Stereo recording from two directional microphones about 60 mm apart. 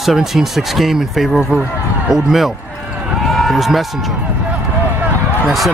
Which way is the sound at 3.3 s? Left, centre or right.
Centre.